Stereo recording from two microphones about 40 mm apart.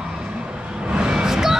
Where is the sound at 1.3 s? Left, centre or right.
Centre.